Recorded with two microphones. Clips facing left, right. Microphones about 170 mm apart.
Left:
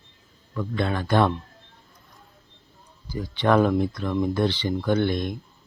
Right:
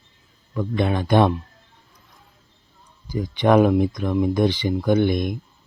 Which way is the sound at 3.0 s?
15° right (ahead or behind).